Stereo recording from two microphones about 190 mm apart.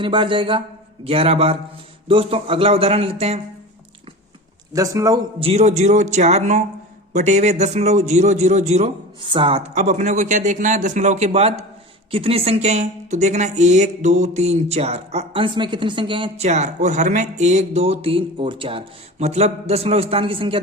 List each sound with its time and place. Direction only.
0.0 s speech: 25° right (ahead or behind)
4.7 s a man's voice: 15° right (ahead or behind)
5.4 s speech: 35° right (ahead or behind)